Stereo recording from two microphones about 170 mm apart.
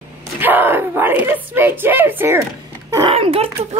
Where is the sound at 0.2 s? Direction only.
10° right (ahead or behind).